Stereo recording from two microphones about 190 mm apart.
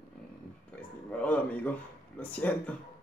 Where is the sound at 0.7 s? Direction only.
10° left (ahead or behind).